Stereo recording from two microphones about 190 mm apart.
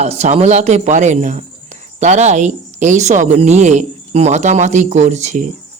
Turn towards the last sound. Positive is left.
turn(degrees=-40)  # may be behind; listen again after turning